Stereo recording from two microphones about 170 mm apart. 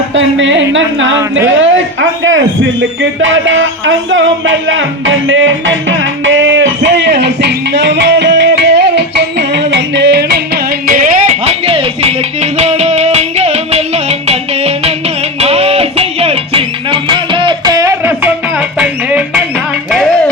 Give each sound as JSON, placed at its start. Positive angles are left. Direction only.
{"t": 0.1, "sound": "speech", "side_deg": -90}
{"t": 5.3, "sound": "a sound", "side_deg": -90}
{"t": 15.4, "sound": "music", "side_deg": -35}